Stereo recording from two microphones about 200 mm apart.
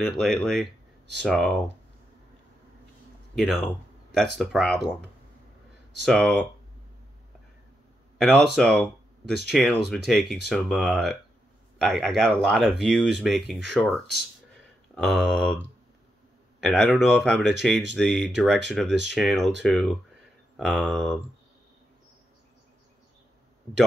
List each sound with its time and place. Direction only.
0.0 s speech: centre (ahead or behind)
4.1 s speech: centre (ahead or behind)
6.0 s speech: 5° left (ahead or behind)
8.2 s speech: centre (ahead or behind)
16.6 s speech: centre (ahead or behind)